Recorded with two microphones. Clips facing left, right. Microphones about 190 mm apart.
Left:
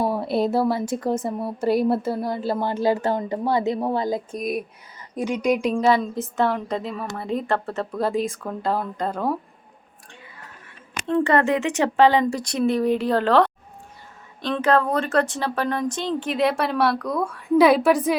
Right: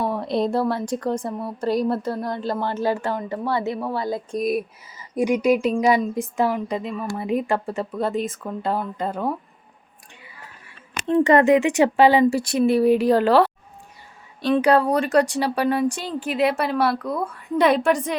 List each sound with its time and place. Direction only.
0.0 s a woman's voice: 5° left (ahead or behind)
4.3 s speech: centre (ahead or behind)
5.8 s speech: 15° right (ahead or behind)
7.2 s speech: 10° right (ahead or behind)
7.9 s speech: centre (ahead or behind)
11.1 s speech: 15° right (ahead or behind); by 18.2 s 5° left (ahead or behind)